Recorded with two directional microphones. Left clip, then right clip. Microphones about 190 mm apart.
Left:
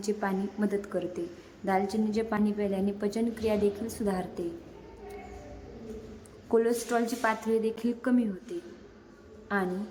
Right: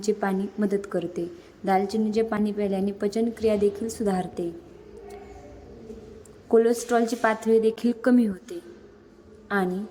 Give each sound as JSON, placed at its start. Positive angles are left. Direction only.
{"t": 0.0, "sound": "a woman's voice", "side_deg": -20}
{"t": 6.5, "sound": "a woman's voice", "side_deg": -20}